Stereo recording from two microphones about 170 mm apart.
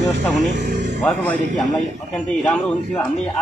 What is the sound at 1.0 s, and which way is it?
Speech, 5° left (ahead or behind).